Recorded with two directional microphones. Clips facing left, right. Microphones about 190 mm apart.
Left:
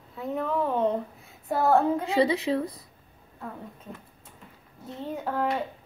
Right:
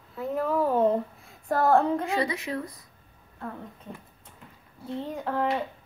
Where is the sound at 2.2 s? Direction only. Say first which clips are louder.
Left 6 dB; 25° left (ahead or behind).